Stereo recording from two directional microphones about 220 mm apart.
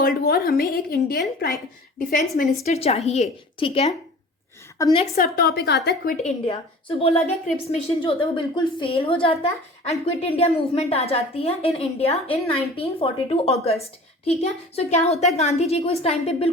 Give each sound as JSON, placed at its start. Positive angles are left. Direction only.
{"t": 0.0, "sound": "a woman's voice", "side_deg": 45}
{"t": 2.6, "sound": "a woman's voice", "side_deg": 30}
{"t": 4.8, "sound": "a woman's voice", "side_deg": 15}
{"t": 5.1, "sound": "a woman's voice", "side_deg": 45}
{"t": 6.2, "sound": "a woman's voice", "side_deg": 25}